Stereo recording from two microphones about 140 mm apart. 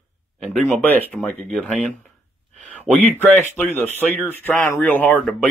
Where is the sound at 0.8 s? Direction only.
10° left (ahead or behind).